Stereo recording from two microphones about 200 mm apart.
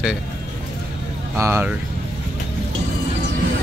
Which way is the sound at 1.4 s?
15° right (ahead or behind).